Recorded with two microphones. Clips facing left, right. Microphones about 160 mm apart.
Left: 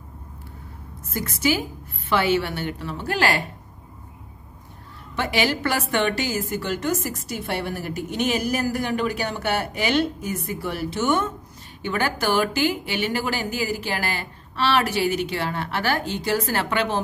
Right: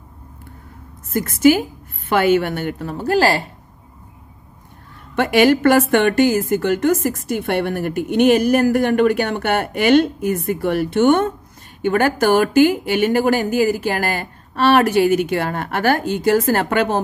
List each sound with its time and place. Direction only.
1.1 s speech: 50° right (ahead or behind)
5.1 s a woman's voice: 55° right (ahead or behind)
11.8 s speech: 50° right (ahead or behind)